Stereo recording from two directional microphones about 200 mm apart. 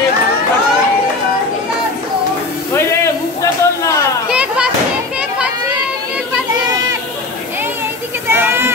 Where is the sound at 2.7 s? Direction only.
15° left (ahead or behind).